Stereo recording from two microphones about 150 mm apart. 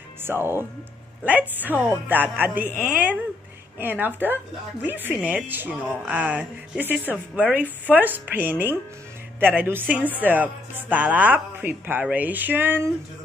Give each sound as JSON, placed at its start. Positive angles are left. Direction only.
{"t": 0.2, "sound": "speech", "side_deg": -15}